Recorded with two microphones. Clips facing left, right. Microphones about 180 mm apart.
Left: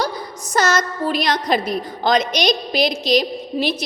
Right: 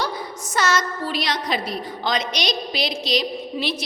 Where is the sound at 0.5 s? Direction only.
40° left (ahead or behind).